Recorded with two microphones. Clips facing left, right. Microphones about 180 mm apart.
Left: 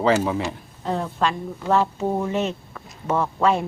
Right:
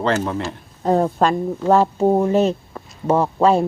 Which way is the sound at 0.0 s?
5° left (ahead or behind).